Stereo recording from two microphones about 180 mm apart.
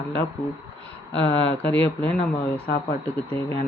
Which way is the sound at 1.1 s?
90° left.